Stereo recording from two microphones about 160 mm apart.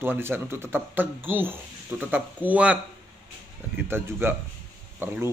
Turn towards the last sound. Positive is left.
turn(degrees=-15)  # may be behind; listen again after turning